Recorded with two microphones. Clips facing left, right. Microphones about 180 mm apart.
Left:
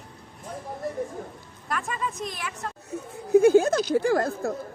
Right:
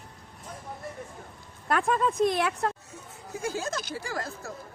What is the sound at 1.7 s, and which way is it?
A woman's voice, 55° right (ahead or behind).